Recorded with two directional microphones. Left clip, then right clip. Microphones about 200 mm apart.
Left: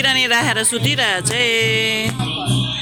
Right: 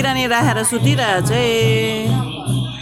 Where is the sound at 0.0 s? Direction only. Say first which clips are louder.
Left 1 dB; 5° right (ahead or behind).